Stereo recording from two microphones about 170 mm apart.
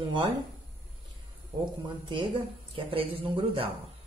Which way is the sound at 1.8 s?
30° right (ahead or behind).